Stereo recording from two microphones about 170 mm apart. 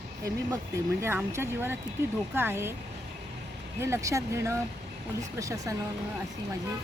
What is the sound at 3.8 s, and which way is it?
A woman's voice, 15° right (ahead or behind).